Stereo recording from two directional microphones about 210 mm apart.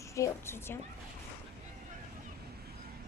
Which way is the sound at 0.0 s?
15° left (ahead or behind).